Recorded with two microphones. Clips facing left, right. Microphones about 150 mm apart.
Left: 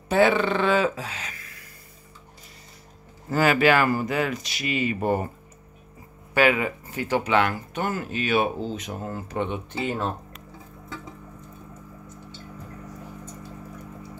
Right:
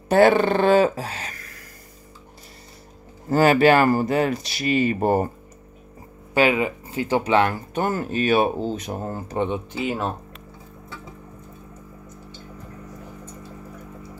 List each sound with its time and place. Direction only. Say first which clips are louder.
0.1 s speech: right 4 dB; 45° right (ahead or behind)
3.3 s speech: right 4 dB; 35° right (ahead or behind)
6.3 s speech: right 2 dB; 25° right (ahead or behind)
9.7 s speech: right 2 dB; 10° right (ahead or behind)